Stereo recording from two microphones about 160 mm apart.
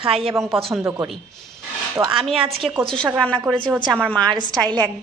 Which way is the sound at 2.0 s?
15° right (ahead or behind).